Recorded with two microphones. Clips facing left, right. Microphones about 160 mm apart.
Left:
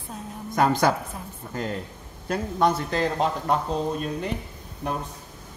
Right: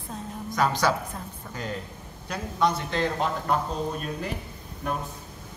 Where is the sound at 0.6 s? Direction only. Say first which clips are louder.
Left 3 dB; 50° left (ahead or behind).